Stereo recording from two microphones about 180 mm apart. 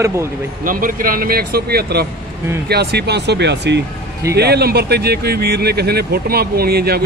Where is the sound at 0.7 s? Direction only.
50° right (ahead or behind).